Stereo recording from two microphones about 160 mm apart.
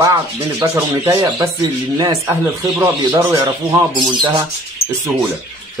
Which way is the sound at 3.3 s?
15° right (ahead or behind).